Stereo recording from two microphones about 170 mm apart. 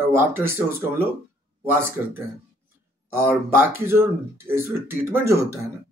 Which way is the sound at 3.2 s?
15° right (ahead or behind).